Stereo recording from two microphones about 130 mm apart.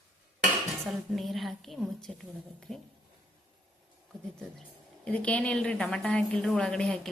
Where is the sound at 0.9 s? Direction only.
Centre (ahead or behind).